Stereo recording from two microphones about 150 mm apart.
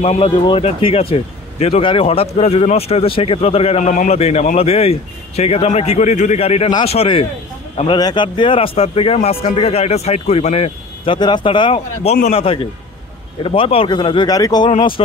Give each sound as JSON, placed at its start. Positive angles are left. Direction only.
{"t": 0.0, "sound": "speech", "side_deg": 40}
{"t": 3.9, "sound": "a man's voice", "side_deg": 60}
{"t": 4.2, "sound": "a man's voice", "side_deg": 45}